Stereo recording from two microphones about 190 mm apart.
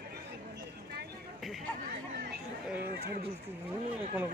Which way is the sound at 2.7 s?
55° right (ahead or behind).